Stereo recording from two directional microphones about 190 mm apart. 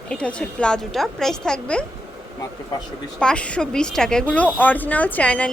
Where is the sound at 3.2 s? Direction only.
5° left (ahead or behind).